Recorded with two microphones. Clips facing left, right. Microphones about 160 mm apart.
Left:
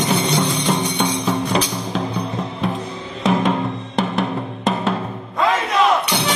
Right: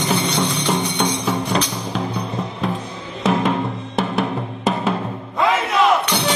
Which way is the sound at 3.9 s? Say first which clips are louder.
Even; 5° right (ahead or behind).